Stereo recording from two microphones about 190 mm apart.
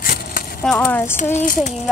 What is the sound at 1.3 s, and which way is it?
Speech, 40° left (ahead or behind).